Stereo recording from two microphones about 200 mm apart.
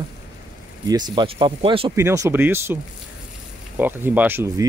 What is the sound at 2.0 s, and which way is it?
Speech, 15° right (ahead or behind).